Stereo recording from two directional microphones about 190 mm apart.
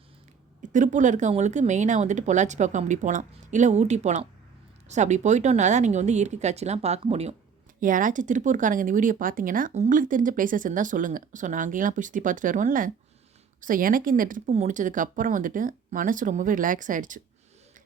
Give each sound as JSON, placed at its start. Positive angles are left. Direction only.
{"t": 0.7, "sound": "speech", "side_deg": -40}
{"t": 7.8, "sound": "speech", "side_deg": -45}